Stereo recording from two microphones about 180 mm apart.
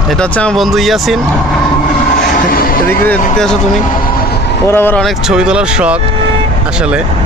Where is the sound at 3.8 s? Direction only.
50° left (ahead or behind).